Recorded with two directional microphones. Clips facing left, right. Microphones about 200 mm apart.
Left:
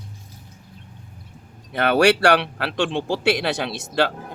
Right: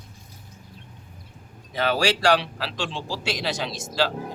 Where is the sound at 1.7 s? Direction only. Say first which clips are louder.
Left 6 dB; 60° left (ahead or behind).